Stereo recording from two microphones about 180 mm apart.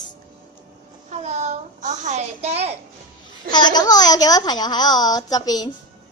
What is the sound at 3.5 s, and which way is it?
Speech, 25° left (ahead or behind).